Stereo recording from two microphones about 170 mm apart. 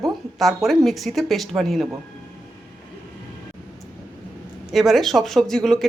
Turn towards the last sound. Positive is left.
turn(degrees=5)  # may be behind; listen again after turning